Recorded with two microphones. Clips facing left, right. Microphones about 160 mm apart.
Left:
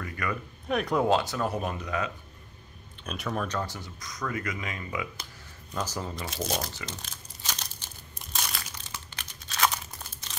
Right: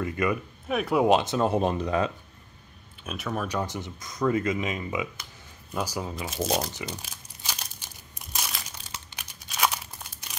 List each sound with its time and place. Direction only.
0.0 s speech: 20° right (ahead or behind)
0.7 s speech: 5° right (ahead or behind)
1.0 s speech: 20° right (ahead or behind)
3.0 s speech: centre (ahead or behind)
3.4 s speech: 15° right (ahead or behind)
5.7 s speech: 10° right (ahead or behind)
6.9 s crumpling: 10° right (ahead or behind)
9.1 s a sound: 10° right (ahead or behind)